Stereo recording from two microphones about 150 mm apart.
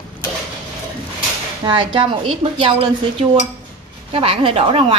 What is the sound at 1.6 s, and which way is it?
A woman's voice, 35° right (ahead or behind).